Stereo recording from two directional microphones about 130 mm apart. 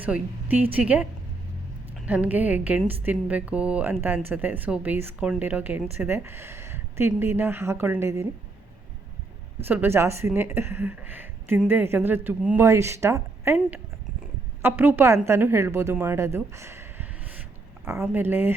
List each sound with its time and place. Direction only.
0.0 s a woman's voice: 10° right (ahead or behind)
2.0 s a woman's voice: 10° right (ahead or behind)
9.6 s a woman's voice: 15° right (ahead or behind)